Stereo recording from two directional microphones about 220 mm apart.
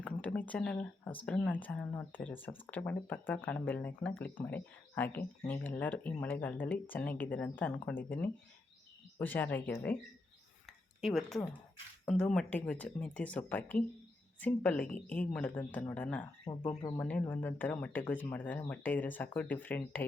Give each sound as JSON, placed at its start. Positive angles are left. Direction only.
{"t": 0.0, "sound": "speech", "side_deg": 5}
{"t": 10.7, "sound": "a sound", "side_deg": 0}
{"t": 12.0, "sound": "speech", "side_deg": 5}
{"t": 16.4, "sound": "speech", "side_deg": 20}
{"t": 17.0, "sound": "speech", "side_deg": 5}